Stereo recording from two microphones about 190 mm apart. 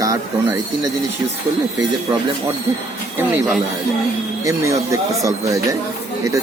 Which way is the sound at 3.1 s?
10° right (ahead or behind).